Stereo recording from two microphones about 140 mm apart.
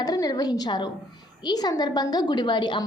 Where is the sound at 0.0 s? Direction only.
25° left (ahead or behind).